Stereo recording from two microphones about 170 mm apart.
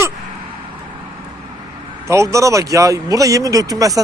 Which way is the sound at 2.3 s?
20° right (ahead or behind).